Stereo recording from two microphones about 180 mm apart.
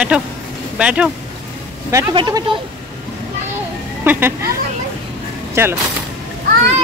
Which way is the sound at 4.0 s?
10° right (ahead or behind).